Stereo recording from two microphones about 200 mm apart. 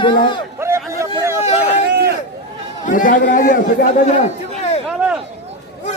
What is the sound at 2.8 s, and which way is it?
A man's voice, 40° left (ahead or behind).